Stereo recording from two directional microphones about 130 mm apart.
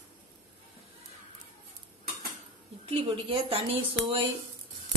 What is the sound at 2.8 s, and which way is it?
A woman's voice, 45° right (ahead or behind).